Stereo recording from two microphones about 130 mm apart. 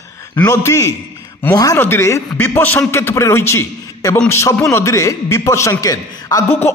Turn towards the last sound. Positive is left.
turn(degrees=20)  # may be behind; listen again after turning